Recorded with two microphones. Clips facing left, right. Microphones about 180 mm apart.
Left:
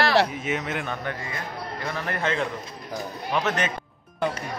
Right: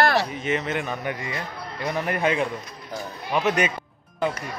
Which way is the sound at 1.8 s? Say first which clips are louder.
Right 5 dB; 15° right (ahead or behind).